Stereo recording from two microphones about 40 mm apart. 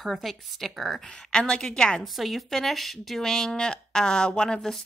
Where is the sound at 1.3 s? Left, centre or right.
Centre.